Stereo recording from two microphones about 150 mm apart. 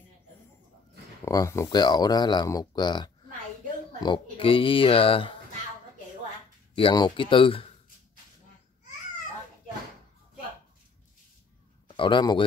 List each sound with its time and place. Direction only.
1.2 s speech: 20° left (ahead or behind); by 5.4 s 35° left (ahead or behind)
6.7 s speech: 35° left (ahead or behind)
12.0 s speech: 30° left (ahead or behind)